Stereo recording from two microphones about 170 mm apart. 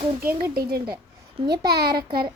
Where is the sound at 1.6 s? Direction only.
70° right (ahead or behind).